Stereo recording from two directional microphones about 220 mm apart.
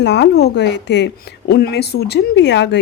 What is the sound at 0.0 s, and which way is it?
Speech, 50° left (ahead or behind).